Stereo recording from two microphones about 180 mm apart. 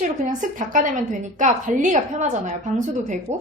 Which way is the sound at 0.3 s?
45° right (ahead or behind).